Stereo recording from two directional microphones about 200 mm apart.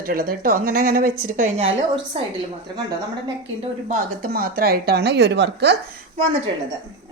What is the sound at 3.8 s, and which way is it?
A woman's voice, 45° right (ahead or behind).